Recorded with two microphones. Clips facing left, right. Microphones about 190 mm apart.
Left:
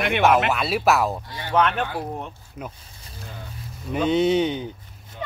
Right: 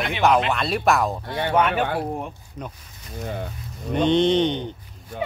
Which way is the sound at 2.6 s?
5° left (ahead or behind).